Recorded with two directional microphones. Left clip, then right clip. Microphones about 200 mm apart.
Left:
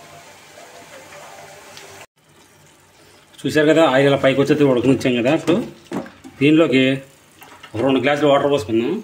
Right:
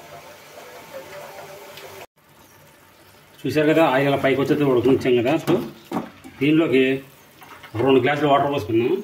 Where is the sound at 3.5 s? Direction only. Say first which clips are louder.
Left 3 dB; 50° left (ahead or behind).